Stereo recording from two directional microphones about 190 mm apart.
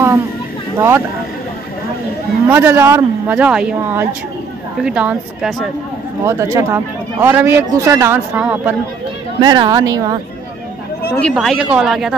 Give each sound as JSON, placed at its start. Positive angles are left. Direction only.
{"t": 0.7, "sound": "speech", "side_deg": -15}
{"t": 2.5, "sound": "a woman's voice", "side_deg": -10}
{"t": 9.4, "sound": "a woman's voice", "side_deg": -20}
{"t": 11.1, "sound": "a woman's voice", "side_deg": 5}